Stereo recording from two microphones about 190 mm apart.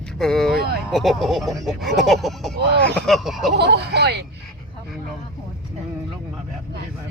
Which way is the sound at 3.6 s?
60° right (ahead or behind).